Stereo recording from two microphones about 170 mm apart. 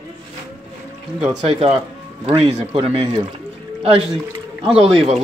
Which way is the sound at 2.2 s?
35° right (ahead or behind).